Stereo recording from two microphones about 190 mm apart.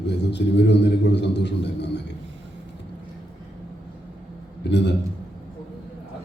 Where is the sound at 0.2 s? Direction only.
65° left (ahead or behind).